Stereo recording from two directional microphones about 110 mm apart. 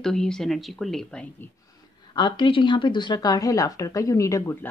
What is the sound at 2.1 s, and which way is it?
Speech, 45° left (ahead or behind).